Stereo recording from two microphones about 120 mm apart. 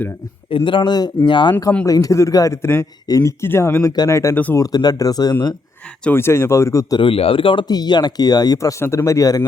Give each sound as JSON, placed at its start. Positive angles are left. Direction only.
{"t": 0.5, "sound": "speech", "side_deg": 45}
{"t": 1.8, "sound": "speech", "side_deg": 30}
{"t": 6.1, "sound": "speech", "side_deg": 20}
{"t": 7.0, "sound": "speech", "side_deg": 50}